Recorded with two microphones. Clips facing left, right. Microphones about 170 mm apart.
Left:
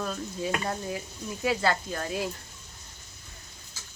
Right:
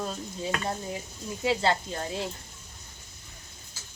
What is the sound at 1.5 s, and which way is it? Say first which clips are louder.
Speech: right 1 dB; 25° right (ahead or behind).